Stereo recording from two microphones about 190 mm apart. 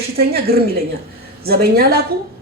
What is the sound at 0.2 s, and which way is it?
A woman's voice, 55° right (ahead or behind).